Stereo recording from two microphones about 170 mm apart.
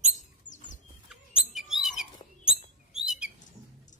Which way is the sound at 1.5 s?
Centre (ahead or behind).